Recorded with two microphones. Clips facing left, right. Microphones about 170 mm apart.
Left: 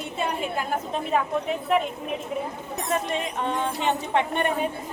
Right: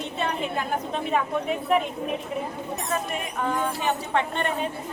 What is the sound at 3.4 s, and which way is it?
Speech, 25° left (ahead or behind).